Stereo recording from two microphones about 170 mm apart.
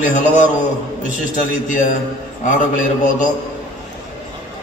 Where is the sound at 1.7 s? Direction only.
50° left (ahead or behind).